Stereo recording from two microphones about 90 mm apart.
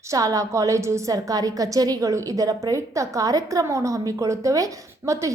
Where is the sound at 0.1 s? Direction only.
40° right (ahead or behind).